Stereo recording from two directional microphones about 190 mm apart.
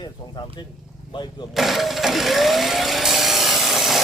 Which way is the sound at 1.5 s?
Centre (ahead or behind).